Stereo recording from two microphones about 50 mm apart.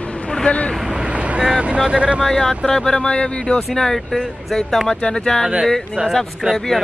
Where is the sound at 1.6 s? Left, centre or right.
Right.